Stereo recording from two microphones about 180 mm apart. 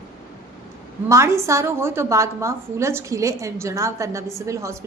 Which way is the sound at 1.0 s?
15° right (ahead or behind).